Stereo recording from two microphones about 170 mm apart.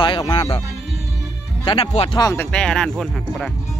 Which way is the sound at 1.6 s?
30° left (ahead or behind).